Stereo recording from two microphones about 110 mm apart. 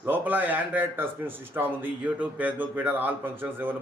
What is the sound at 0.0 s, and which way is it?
Speech, 15° right (ahead or behind).